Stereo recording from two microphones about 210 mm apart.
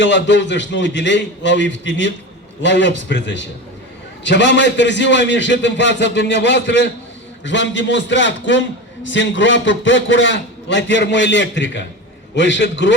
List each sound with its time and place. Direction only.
0.0 s a man's voice: 60° left (ahead or behind)